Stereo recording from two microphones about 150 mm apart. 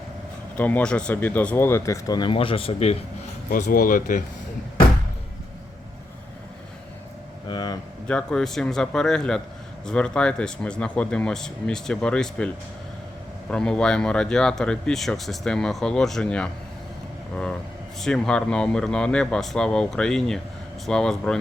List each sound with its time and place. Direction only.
0.5 s speech: 10° left (ahead or behind); by 3.0 s 40° left (ahead or behind)
3.5 s speech: 65° left (ahead or behind)
7.4 s a sound: 30° left (ahead or behind)
8.0 s speech: 5° left (ahead or behind)
13.5 s speech: 5° left (ahead or behind)
18.0 s speech: 5° left (ahead or behind)